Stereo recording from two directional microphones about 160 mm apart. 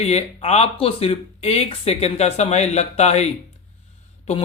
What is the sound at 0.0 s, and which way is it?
Speech, 40° left (ahead or behind).